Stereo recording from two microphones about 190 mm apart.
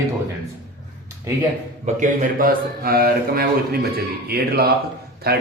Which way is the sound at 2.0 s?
45° right (ahead or behind).